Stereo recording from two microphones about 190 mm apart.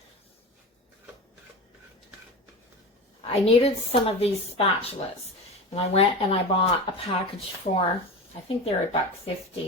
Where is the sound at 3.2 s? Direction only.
30° left (ahead or behind).